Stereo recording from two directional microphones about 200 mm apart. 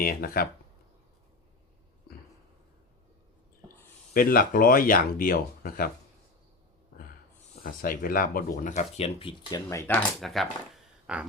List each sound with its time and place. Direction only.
0.0 s speech: 50° left (ahead or behind)
4.1 s speech: 45° left (ahead or behind)
7.6 s speech: 45° left (ahead or behind); by 9.6 s 25° left (ahead or behind)
9.6 s speech: 10° left (ahead or behind)
10.2 s speech: centre (ahead or behind)
11.0 s a sound: 5° right (ahead or behind)